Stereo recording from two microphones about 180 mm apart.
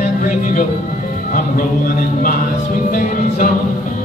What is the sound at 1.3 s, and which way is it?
Speech, 50° left (ahead or behind).